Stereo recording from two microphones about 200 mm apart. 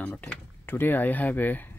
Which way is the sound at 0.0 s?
5° left (ahead or behind).